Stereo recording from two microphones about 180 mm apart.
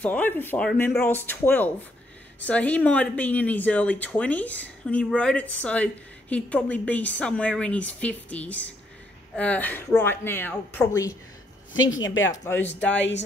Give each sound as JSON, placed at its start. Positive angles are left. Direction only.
{"t": 0.0, "sound": "speech", "side_deg": 10}
{"t": 12.0, "sound": "speech", "side_deg": 90}
{"t": 12.4, "sound": "speech", "side_deg": 10}